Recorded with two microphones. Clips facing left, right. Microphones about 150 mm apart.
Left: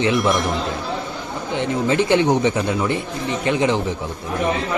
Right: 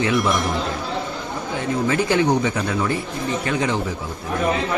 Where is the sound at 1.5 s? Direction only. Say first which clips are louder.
Left 2 dB; 25° left (ahead or behind).